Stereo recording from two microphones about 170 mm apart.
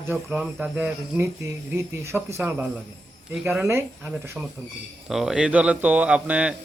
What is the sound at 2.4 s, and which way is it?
A man's voice, 10° right (ahead or behind).